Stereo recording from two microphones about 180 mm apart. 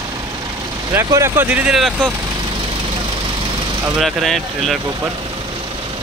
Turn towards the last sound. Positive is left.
turn(degrees=0)  # may be behind; listen again after turning